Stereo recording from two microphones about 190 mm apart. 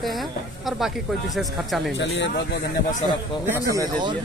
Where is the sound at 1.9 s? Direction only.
70° left (ahead or behind).